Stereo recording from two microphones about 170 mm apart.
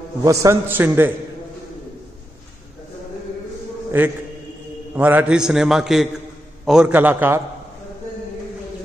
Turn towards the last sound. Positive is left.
turn(degrees=-10)  # may be behind; listen again after turning